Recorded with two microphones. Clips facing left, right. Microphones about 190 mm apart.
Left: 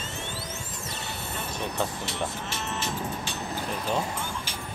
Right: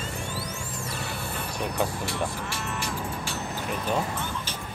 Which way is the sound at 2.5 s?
20° left (ahead or behind).